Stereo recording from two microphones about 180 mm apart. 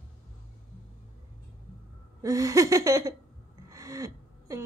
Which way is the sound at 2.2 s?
15° right (ahead or behind).